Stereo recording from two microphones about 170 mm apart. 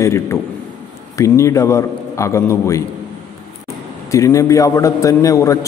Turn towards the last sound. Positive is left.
turn(degrees=20)  # may be behind; listen again after turning